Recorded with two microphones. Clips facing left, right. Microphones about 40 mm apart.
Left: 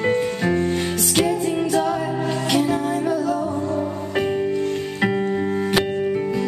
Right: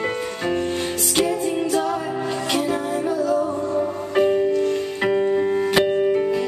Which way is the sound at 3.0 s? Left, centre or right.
Left.